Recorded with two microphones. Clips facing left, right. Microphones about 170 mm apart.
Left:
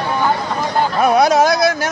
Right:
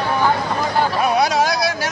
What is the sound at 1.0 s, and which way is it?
Speech, 45° left (ahead or behind).